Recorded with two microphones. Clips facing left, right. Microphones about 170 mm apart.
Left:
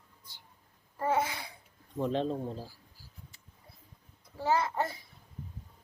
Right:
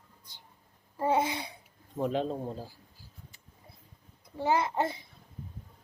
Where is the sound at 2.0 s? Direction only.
10° right (ahead or behind).